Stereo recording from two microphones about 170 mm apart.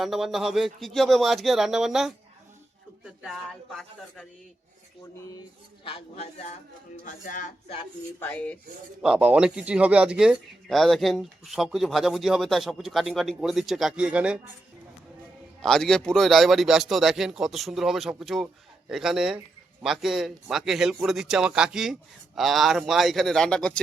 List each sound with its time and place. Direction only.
0.0 s speech: centre (ahead or behind)
5.8 s speech: 35° left (ahead or behind)
7.0 s speech: 50° left (ahead or behind)
8.2 s rub: 10° left (ahead or behind)
9.0 s speech: 5° right (ahead or behind)
15.6 s speech: 5° left (ahead or behind)